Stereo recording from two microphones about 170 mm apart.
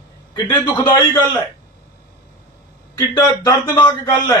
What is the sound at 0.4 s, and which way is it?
Speech, 25° left (ahead or behind).